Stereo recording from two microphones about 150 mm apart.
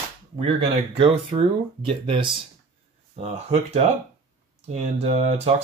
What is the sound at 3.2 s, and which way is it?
Speech, 50° right (ahead or behind).